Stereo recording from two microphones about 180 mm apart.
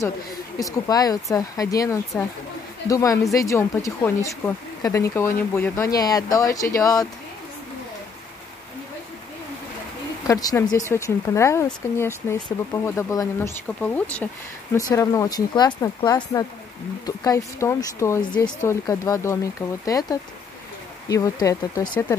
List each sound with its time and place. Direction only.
0.7 s speech: 20° left (ahead or behind)
10.2 s speech: 20° left (ahead or behind)